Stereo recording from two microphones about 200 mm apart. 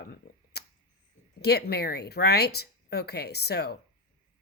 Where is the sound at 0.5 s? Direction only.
55° left (ahead or behind).